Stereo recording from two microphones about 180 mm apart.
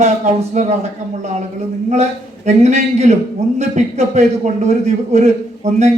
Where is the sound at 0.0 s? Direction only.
40° right (ahead or behind).